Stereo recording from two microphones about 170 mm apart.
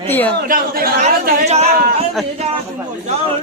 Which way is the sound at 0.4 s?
60° right (ahead or behind).